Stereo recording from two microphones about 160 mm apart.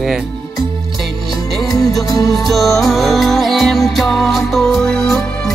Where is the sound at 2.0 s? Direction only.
20° left (ahead or behind).